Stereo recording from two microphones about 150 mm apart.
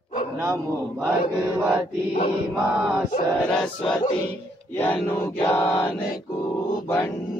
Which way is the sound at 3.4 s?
5° left (ahead or behind).